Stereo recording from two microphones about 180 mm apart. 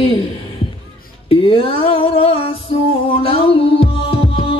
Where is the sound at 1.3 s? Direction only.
30° left (ahead or behind).